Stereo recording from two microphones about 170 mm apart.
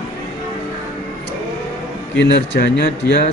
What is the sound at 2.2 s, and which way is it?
Speech, 80° left.